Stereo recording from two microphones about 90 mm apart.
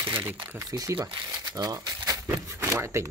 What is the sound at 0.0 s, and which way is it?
Crumpling, 25° right (ahead or behind).